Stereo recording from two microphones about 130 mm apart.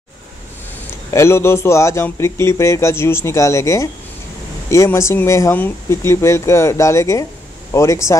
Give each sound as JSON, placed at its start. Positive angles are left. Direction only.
{"t": 1.1, "sound": "a man's voice", "side_deg": 20}